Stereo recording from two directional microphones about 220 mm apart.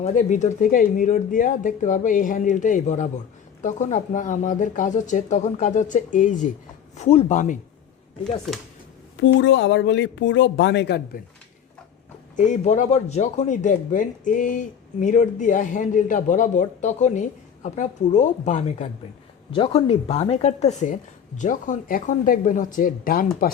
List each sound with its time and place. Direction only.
0.0 s speech: 35° left (ahead or behind)
9.2 s speech: 55° left (ahead or behind)
12.4 s speech: 35° left (ahead or behind)